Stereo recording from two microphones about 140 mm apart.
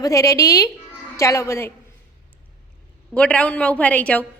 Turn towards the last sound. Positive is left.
turn(degrees=10)  # may be behind; listen again after turning